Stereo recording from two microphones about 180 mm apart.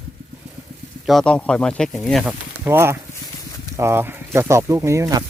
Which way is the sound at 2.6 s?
15° right (ahead or behind).